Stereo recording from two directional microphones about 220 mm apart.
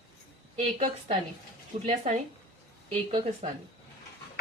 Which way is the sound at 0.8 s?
20° right (ahead or behind).